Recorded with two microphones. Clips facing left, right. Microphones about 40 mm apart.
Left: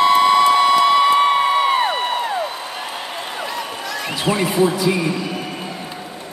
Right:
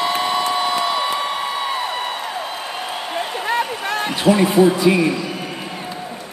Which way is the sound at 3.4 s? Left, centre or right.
Right.